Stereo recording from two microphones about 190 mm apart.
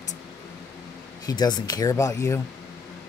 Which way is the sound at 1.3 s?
20° left (ahead or behind).